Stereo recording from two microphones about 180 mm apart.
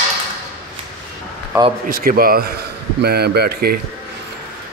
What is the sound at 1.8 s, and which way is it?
A man's voice, 50° right (ahead or behind).